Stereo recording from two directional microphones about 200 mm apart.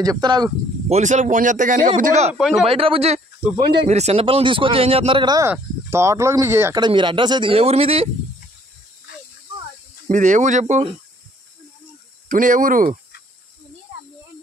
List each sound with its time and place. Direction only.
0.0 s speech: 20° right (ahead or behind)
2.3 s a man's voice: centre (ahead or behind)
2.6 s speech: 30° right (ahead or behind)
10.0 s speech: 35° right (ahead or behind)
12.3 s speech: 40° right (ahead or behind)